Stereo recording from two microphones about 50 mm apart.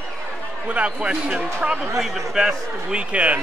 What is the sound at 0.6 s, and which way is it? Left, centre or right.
Speech, right.